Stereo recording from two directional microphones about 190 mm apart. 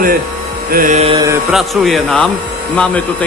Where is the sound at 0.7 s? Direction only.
45° right (ahead or behind).